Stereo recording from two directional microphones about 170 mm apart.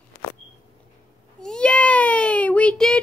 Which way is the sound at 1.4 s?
5° left (ahead or behind).